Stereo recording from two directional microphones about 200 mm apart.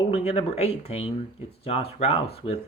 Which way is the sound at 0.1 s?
30° left (ahead or behind).